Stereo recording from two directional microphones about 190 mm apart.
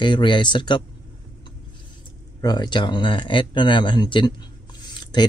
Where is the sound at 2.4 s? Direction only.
20° left (ahead or behind).